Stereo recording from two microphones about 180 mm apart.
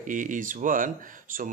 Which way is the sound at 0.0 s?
45° right (ahead or behind).